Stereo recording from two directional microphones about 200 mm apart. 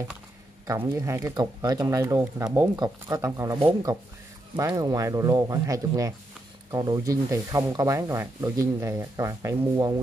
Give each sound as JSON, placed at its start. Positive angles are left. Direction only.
{"t": 0.7, "sound": "speech", "side_deg": -15}
{"t": 4.6, "sound": "speech", "side_deg": -15}